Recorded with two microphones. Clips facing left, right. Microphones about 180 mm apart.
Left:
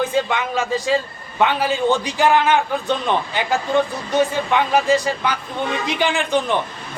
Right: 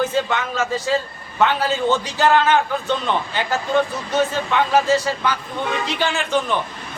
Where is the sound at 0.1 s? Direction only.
15° left (ahead or behind).